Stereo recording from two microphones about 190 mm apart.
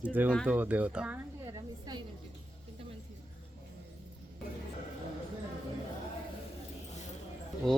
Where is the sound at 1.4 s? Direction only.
20° right (ahead or behind).